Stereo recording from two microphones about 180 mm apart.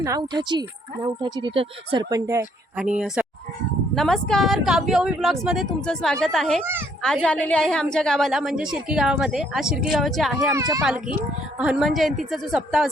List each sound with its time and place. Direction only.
0.0 s speech: 20° right (ahead or behind)
2.7 s a woman's voice: 5° right (ahead or behind)
10.5 s speech: 20° right (ahead or behind)
10.8 s a woman's voice: 5° right (ahead or behind)